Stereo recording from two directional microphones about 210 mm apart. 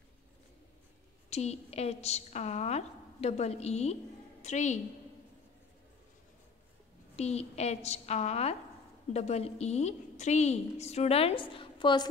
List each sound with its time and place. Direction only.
1.3 s a woman's voice: 30° left (ahead or behind)
7.2 s a woman's voice: 30° left (ahead or behind)